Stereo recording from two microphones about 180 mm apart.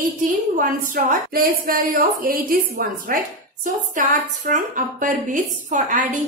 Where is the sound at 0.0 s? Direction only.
50° right (ahead or behind).